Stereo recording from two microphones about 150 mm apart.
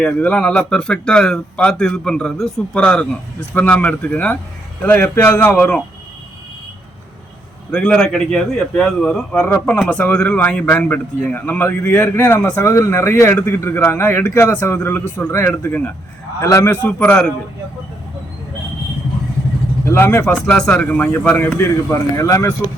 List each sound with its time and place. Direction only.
0.0 s speech: 10° left (ahead or behind)
7.7 s a man's voice: 5° left (ahead or behind)
16.8 s speech: 10° left (ahead or behind)
19.8 s speech: 15° left (ahead or behind)